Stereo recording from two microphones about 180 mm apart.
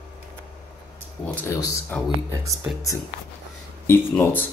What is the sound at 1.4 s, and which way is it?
Speech, 10° left (ahead or behind).